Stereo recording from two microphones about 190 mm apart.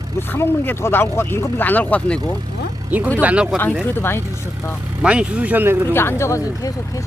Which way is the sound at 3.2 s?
10° right (ahead or behind).